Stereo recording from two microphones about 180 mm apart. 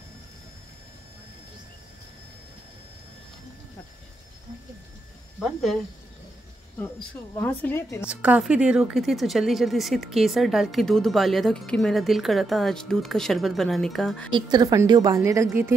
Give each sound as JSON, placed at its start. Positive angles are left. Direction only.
{"t": 5.4, "sound": "speech", "side_deg": 0}
{"t": 6.8, "sound": "a woman's voice", "side_deg": 5}
{"t": 8.1, "sound": "speech", "side_deg": -5}
{"t": 14.3, "sound": "a woman's voice", "side_deg": -25}